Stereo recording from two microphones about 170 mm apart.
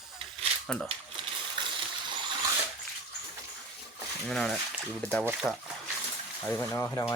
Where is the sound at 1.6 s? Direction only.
30° right (ahead or behind).